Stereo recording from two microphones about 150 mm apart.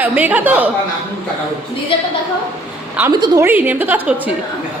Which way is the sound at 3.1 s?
30° right (ahead or behind).